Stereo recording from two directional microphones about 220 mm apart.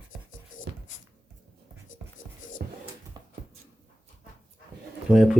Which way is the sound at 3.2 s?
20° right (ahead or behind).